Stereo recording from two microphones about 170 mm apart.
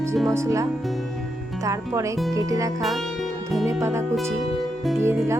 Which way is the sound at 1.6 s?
20° right (ahead or behind).